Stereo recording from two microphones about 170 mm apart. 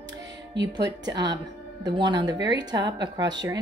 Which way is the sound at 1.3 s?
25° right (ahead or behind).